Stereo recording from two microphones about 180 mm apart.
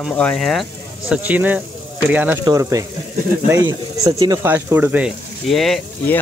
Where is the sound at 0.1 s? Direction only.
5° left (ahead or behind).